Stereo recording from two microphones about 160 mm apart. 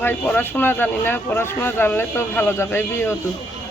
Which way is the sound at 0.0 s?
10° left (ahead or behind).